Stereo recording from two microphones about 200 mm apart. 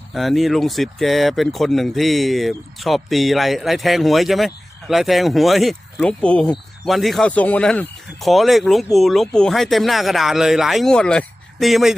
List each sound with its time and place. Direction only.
0.1 s speech: centre (ahead or behind)